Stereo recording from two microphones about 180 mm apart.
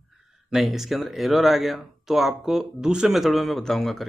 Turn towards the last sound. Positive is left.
turn(degrees=0)  # may be behind; listen again after turning